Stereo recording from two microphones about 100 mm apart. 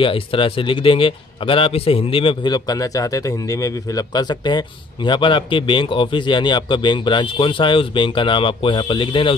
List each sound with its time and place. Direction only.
0.0 s a man's voice: 60° left (ahead or behind)
2.4 s a man's voice: 40° left (ahead or behind); by 9.3 s 55° left (ahead or behind)